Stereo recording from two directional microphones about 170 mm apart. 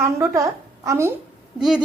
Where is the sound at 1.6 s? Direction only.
5° right (ahead or behind).